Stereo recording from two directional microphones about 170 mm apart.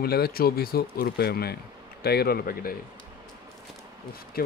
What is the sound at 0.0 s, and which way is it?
Speech, 65° left (ahead or behind).